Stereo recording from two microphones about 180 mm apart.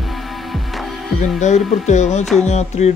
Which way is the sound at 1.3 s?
40° left (ahead or behind).